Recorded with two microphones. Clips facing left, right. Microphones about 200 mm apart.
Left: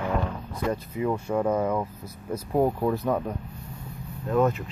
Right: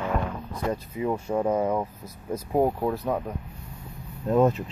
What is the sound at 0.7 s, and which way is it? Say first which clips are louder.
Speech: even; 20° right (ahead or behind).